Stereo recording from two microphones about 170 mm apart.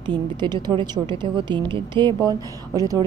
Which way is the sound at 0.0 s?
25° right (ahead or behind).